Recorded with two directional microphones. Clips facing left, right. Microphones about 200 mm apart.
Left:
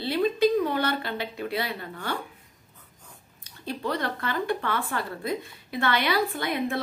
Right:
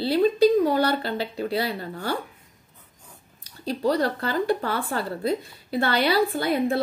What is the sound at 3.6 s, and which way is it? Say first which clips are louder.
A woman's voice: right 6 dB; 35° right (ahead or behind).